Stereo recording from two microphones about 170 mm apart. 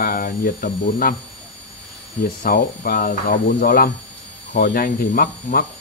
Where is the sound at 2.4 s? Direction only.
55° left (ahead or behind).